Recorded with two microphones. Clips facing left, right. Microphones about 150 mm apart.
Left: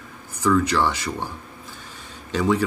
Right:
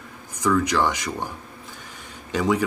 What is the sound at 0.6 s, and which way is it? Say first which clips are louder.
Speech: even; 15° right (ahead or behind).